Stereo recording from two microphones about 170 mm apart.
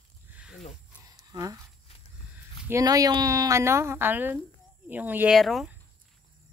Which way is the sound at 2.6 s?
20° right (ahead or behind).